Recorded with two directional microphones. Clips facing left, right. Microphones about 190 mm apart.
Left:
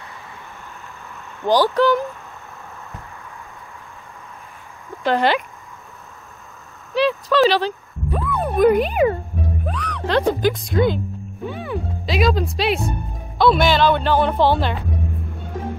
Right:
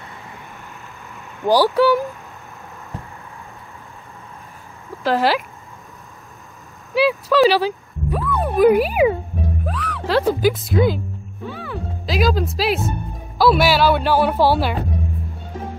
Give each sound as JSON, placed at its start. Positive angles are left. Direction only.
{"t": 1.4, "sound": "speech", "side_deg": -10}
{"t": 5.0, "sound": "speech", "side_deg": -5}
{"t": 6.9, "sound": "speech", "side_deg": -10}
{"t": 11.4, "sound": "music", "side_deg": 20}
{"t": 12.1, "sound": "speech", "side_deg": 0}